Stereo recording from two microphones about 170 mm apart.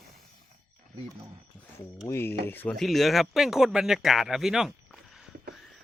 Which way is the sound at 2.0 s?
15° left (ahead or behind).